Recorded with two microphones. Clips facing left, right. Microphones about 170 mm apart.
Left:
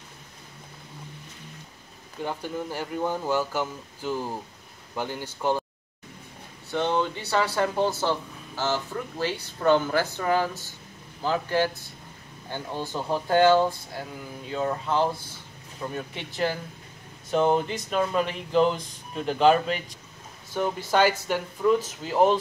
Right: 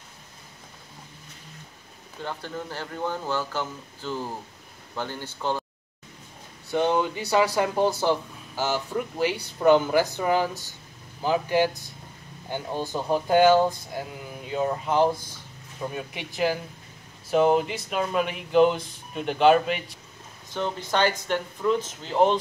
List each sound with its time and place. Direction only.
2.2 s speech: 10° left (ahead or behind)
6.7 s speech: 10° right (ahead or behind)
20.5 s speech: 10° left (ahead or behind)